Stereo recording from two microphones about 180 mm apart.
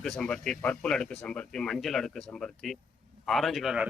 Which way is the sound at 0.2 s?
5° left (ahead or behind).